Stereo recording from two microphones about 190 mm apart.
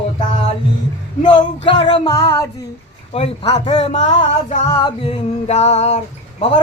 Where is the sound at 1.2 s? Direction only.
25° left (ahead or behind).